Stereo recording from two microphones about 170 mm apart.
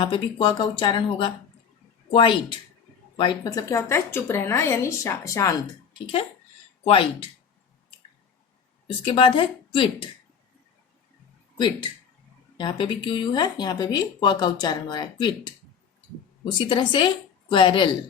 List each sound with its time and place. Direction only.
0.0 s a woman's voice: 30° left (ahead or behind)
6.8 s speech: 35° left (ahead or behind)
9.0 s speech: 30° left (ahead or behind)
11.5 s speech: 25° left (ahead or behind)